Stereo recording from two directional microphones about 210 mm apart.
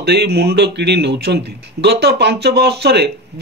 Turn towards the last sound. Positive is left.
turn(degrees=-50)  # may be behind; listen again after turning